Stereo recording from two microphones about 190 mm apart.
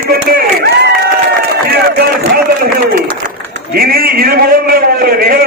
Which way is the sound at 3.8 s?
50° right (ahead or behind).